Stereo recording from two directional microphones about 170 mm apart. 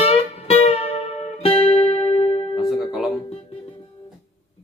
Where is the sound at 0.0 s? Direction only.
35° left (ahead or behind).